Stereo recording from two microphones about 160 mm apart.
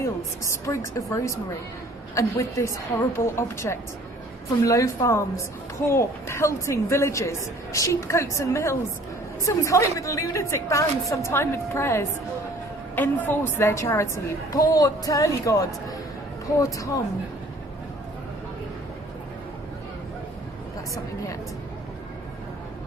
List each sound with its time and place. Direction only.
0.0 s a woman's voice: 15° left (ahead or behind)